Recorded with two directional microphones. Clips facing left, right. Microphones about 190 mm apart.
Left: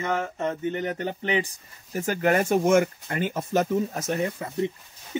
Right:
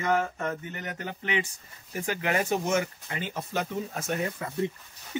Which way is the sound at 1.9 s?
45° left (ahead or behind).